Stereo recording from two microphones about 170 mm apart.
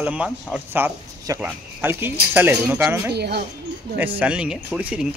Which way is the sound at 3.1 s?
75° right (ahead or behind).